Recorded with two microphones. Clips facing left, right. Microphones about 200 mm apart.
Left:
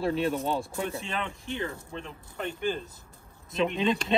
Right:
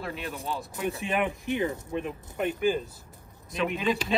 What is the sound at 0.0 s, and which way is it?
Speech, 30° left (ahead or behind).